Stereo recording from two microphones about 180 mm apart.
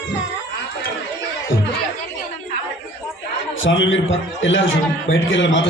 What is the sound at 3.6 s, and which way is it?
A man's voice, 90° left.